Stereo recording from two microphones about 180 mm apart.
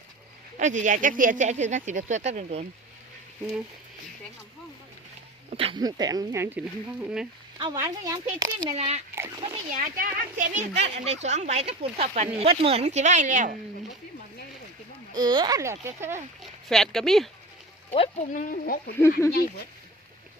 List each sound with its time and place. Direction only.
0.5 s speech: 45° right (ahead or behind)
5.5 s speech: 30° right (ahead or behind)
7.0 s speech: 5° right (ahead or behind)
7.6 s speech: 20° right (ahead or behind)
8.7 s a woman's voice: 40° right (ahead or behind)
9.1 s speech: 20° right (ahead or behind)
9.7 s a woman's voice: 45° right (ahead or behind)
15.1 s a child's voice: 25° right (ahead or behind)
16.4 s speech: centre (ahead or behind)
17.9 s speech: 30° left (ahead or behind)
18.3 s speech: 50° left (ahead or behind)